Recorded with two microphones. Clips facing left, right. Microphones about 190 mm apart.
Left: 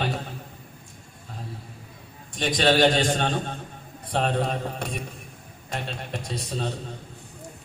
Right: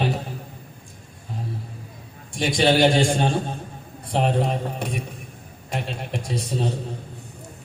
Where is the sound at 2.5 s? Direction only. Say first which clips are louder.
Right 2 dB; 20° right (ahead or behind).